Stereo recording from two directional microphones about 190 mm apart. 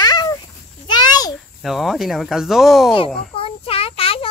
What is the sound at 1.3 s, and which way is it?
Speech, centre (ahead or behind).